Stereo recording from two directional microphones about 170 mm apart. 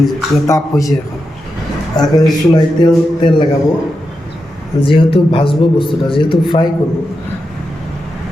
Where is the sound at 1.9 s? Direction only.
25° left (ahead or behind).